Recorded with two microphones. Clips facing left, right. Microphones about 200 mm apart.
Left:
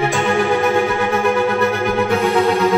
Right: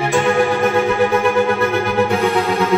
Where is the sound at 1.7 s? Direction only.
15° left (ahead or behind).